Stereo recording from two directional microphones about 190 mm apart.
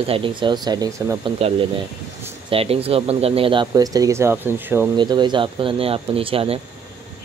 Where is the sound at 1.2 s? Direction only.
30° right (ahead or behind); by 4.8 s 10° right (ahead or behind).